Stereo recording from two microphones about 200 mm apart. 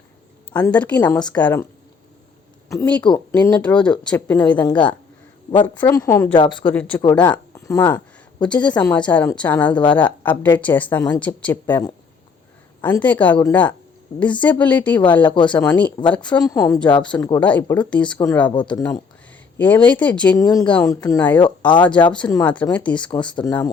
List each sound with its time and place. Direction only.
0.5 s speech: 5° left (ahead or behind)
2.6 s speech: 10° left (ahead or behind)
4.6 s speech: 25° left (ahead or behind)
6.3 s speech: 25° left (ahead or behind)
6.7 s speech: 10° left (ahead or behind)
7.0 s speech: 20° left (ahead or behind)
9.7 s speech: 20° left (ahead or behind)
10.0 s speech: 10° left (ahead or behind)
15.0 s speech: 25° left (ahead or behind)
15.4 s speech: 5° left (ahead or behind)
20.4 s speech: 20° left (ahead or behind)